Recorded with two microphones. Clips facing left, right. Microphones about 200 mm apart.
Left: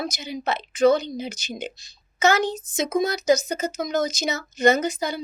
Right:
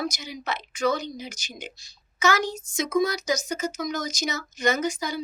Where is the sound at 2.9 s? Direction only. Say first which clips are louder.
Left 4 dB; 25° left (ahead or behind).